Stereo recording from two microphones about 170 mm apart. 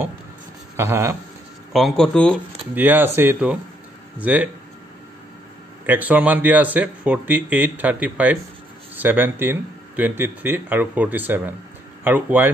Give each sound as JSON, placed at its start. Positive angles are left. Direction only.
{"t": 0.7, "sound": "speech", "side_deg": -15}
{"t": 1.7, "sound": "speech", "side_deg": 0}
{"t": 2.7, "sound": "speech", "side_deg": -10}
{"t": 5.9, "sound": "speech", "side_deg": -10}